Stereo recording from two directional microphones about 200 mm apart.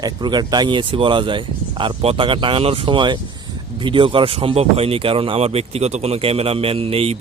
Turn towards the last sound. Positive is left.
turn(degrees=-30)  # may be behind; listen again after turning